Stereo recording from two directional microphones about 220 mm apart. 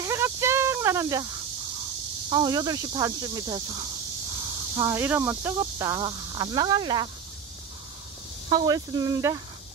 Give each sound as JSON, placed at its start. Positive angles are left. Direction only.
{"t": 0.0, "sound": "snake", "side_deg": -10}
{"t": 2.2, "sound": "speech", "side_deg": -20}
{"t": 4.7, "sound": "speech", "side_deg": -10}
{"t": 8.5, "sound": "speech", "side_deg": -15}